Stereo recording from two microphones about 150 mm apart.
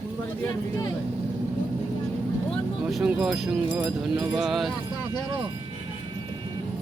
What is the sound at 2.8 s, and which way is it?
Speech, 5° right (ahead or behind).